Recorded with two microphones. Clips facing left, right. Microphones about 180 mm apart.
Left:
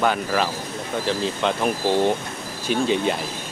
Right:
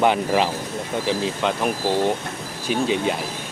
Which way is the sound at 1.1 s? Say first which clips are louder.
Even; 5° right (ahead or behind).